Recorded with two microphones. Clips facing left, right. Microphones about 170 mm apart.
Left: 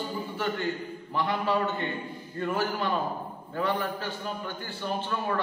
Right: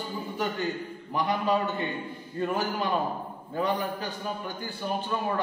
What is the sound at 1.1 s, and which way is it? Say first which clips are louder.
Speech: right 1 dB; 15° right (ahead or behind).